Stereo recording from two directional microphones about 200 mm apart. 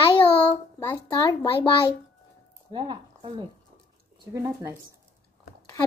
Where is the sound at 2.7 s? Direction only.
25° right (ahead or behind).